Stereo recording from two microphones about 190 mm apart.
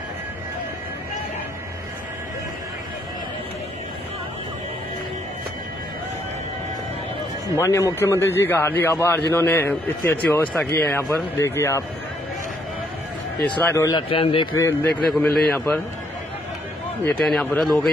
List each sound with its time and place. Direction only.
7.5 s a man's voice: 15° left (ahead or behind)
13.6 s a man's voice: 10° left (ahead or behind); by 14.5 s 30° left (ahead or behind)
14.6 s a man's voice: 15° left (ahead or behind)
15.0 s speech: centre (ahead or behind)
17.0 s speech: 5° left (ahead or behind)